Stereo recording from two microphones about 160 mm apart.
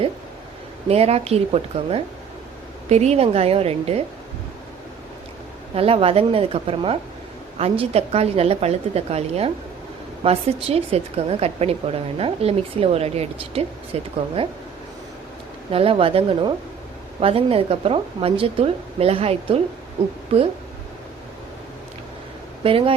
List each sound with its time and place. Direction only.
0.9 s a woman's voice: 40° right (ahead or behind)
5.7 s a woman's voice: 35° right (ahead or behind)
15.7 s a woman's voice: 35° right (ahead or behind)
22.6 s a woman's voice: 35° right (ahead or behind)